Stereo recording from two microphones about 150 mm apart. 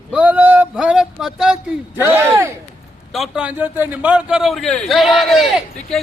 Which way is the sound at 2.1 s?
15° right (ahead or behind).